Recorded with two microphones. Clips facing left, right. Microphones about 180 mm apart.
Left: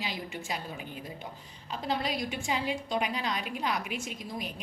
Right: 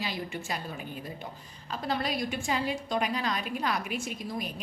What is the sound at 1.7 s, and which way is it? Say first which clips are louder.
Speech: right 1 dB; 15° left (ahead or behind).